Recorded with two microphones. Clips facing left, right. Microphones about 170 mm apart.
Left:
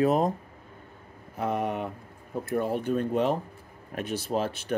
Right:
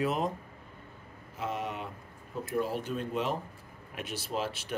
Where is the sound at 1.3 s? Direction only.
55° left (ahead or behind).